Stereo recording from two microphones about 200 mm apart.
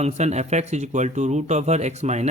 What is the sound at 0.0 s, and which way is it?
Speech, 35° right (ahead or behind).